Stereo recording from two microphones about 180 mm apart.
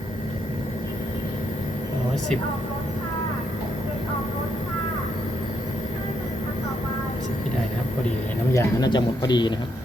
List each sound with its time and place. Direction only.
8.5 s speech: 25° left (ahead or behind)